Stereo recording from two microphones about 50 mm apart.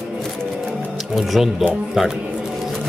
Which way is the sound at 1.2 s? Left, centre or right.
Centre.